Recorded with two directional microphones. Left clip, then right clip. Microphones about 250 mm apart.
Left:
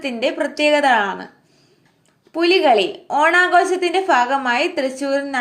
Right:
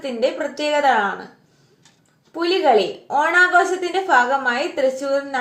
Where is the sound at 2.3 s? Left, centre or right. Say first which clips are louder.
Left 2 dB; left.